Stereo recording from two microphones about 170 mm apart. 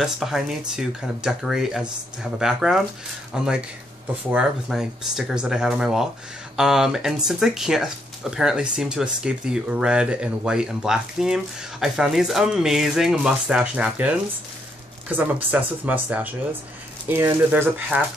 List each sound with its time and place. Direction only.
0.0 s speech: centre (ahead or behind)